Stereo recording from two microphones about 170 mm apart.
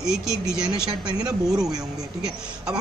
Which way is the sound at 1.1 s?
20° right (ahead or behind).